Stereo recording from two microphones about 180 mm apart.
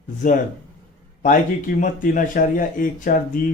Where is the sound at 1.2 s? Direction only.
45° left (ahead or behind).